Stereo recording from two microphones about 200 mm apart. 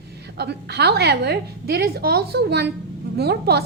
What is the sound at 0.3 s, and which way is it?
A woman's voice, 55° right (ahead or behind).